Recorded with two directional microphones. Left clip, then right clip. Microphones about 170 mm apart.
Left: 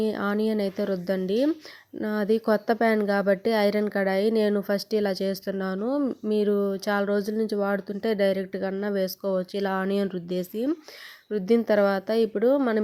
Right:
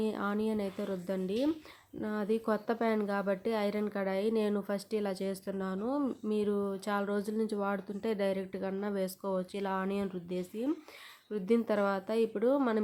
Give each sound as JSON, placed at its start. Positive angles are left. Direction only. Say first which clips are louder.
{"t": 0.0, "sound": "speech", "louder": "left 8 dB", "side_deg": 30}